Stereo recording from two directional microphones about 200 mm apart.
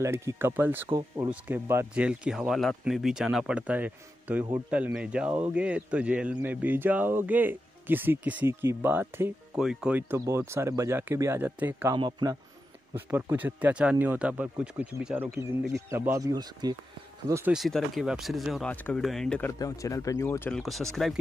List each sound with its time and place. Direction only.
0.0 s a man's voice: 15° right (ahead or behind)
12.9 s speech: 10° right (ahead or behind)
17.6 s speech: centre (ahead or behind)
19.6 s speech: 15° left (ahead or behind)